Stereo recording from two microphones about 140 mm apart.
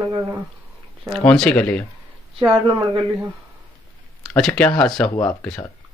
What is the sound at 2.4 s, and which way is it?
Speech, 35° right (ahead or behind).